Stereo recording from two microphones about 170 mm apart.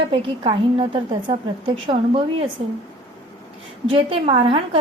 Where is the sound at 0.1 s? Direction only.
30° right (ahead or behind).